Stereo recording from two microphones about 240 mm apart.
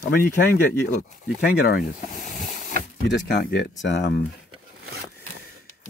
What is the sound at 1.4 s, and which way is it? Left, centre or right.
Boat, left.